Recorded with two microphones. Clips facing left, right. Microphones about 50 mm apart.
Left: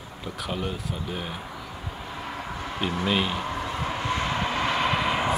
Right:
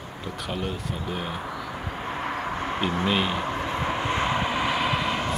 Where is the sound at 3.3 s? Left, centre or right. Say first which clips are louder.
Right 2 dB; right.